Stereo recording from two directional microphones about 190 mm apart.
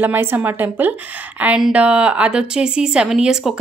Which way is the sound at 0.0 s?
10° right (ahead or behind).